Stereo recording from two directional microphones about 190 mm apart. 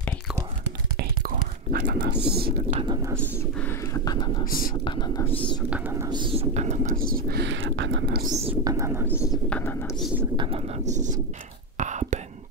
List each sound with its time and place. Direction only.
0.9 s whispering: 50° right (ahead or behind)
1.9 s speech: 60° right (ahead or behind)
2.7 s speech: 25° right (ahead or behind)
3.2 s speech: 15° left (ahead or behind)
4.5 s speech: 50° left (ahead or behind)
4.8 s speech: 25° left (ahead or behind)
5.7 s speech: 10° right (ahead or behind)
6.0 s speech: 25° right (ahead or behind); by 8.2 s 70° right (ahead or behind)
8.6 s speech: 15° right (ahead or behind)
9.1 s speech: 10° left (ahead or behind)
10.3 s speech: 25° right (ahead or behind)
10.9 s speech: 40° right (ahead or behind)
11.7 s whispering: 40° right (ahead or behind)